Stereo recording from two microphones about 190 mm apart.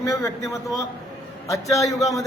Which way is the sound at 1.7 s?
15° left (ahead or behind).